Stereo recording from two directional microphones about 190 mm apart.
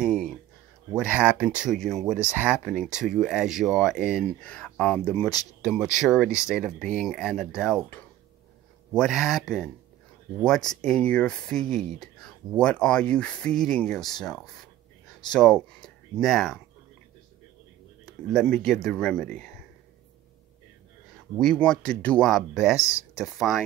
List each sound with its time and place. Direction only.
0.0 s a sound: centre (ahead or behind)
0.9 s speech: 5° right (ahead or behind)
18.3 s speech: centre (ahead or behind)
21.4 s speech: 5° left (ahead or behind)
22.8 s speech: 15° left (ahead or behind)
23.1 s speech: centre (ahead or behind)